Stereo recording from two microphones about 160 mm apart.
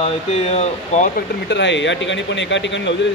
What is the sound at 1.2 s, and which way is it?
A man's voice, 90° left.